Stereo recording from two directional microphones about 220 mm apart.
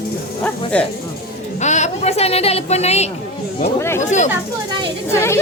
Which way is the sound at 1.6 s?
30° left (ahead or behind).